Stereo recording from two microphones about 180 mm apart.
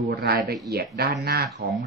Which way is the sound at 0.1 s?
60° right (ahead or behind).